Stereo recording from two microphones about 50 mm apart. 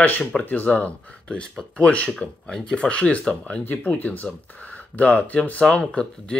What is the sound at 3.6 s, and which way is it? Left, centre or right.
Speech, left.